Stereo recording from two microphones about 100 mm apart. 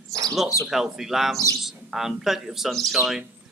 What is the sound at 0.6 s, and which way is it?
A man's voice, 5° right (ahead or behind).